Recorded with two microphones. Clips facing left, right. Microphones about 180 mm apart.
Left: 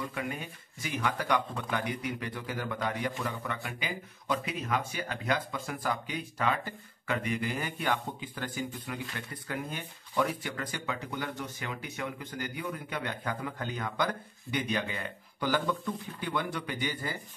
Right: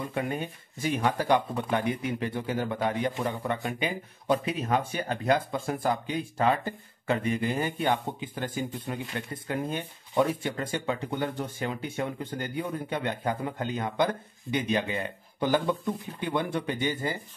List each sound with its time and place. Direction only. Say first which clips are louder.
0.0 s a man's voice: right 5 dB; 30° right (ahead or behind)